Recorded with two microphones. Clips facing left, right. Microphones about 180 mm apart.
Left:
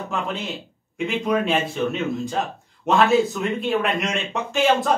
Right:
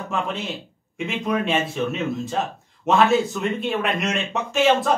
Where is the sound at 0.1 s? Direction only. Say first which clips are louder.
Right 1 dB; centre (ahead or behind).